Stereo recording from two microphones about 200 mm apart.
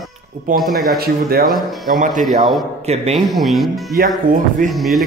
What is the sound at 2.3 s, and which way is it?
Speech, 35° right (ahead or behind).